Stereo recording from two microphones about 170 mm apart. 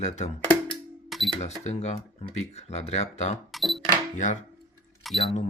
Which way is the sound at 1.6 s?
40° left (ahead or behind).